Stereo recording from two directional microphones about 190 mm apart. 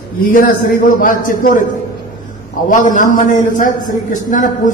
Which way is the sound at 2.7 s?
45° left (ahead or behind).